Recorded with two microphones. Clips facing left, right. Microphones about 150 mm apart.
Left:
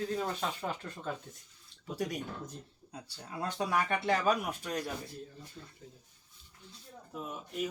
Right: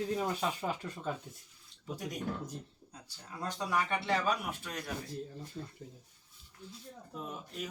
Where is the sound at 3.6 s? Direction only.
55° left (ahead or behind).